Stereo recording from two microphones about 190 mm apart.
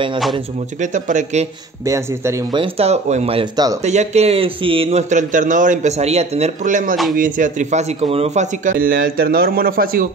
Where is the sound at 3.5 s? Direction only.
20° right (ahead or behind).